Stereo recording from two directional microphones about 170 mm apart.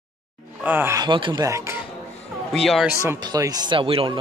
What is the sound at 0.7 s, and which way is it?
Speech, 15° right (ahead or behind).